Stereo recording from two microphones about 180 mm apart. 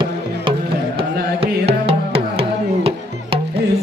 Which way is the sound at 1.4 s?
35° right (ahead or behind).